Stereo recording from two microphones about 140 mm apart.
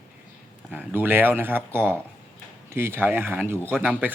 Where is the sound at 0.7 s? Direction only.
15° right (ahead or behind).